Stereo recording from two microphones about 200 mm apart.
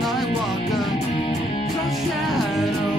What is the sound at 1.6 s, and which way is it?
Music, centre (ahead or behind).